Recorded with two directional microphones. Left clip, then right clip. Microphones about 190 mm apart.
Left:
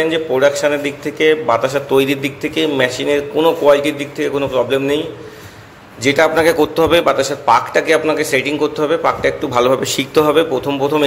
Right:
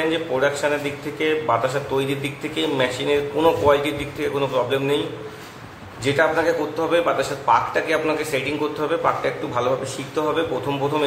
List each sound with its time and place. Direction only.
0.1 s a man's voice: 30° left (ahead or behind)
6.0 s a man's voice: 40° left (ahead or behind)